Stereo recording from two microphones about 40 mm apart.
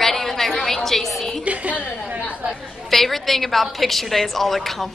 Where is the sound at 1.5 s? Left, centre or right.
Right.